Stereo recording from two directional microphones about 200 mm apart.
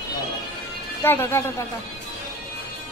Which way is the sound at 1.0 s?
10° left (ahead or behind).